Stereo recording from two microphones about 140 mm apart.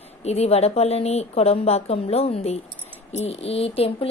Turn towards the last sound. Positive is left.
turn(degrees=45)  # may be behind; listen again after turning